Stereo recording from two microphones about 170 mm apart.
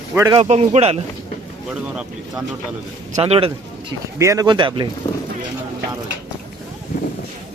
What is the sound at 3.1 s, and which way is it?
Speech, 40° right (ahead or behind).